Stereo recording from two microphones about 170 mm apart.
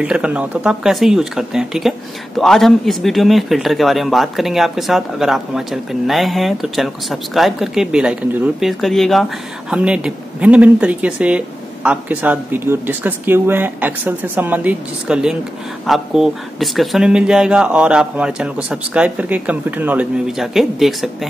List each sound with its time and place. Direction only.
0.0 s speech: 5° right (ahead or behind)